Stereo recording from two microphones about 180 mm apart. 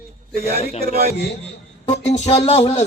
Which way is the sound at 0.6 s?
35° left (ahead or behind).